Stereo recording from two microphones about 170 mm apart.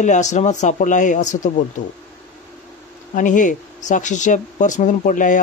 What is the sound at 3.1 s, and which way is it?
Speech, 50° left (ahead or behind).